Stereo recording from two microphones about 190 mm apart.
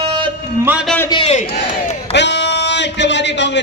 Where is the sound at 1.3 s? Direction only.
40° left (ahead or behind).